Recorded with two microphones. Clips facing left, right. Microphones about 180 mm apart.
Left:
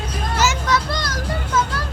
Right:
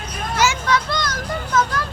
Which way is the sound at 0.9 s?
35° left (ahead or behind).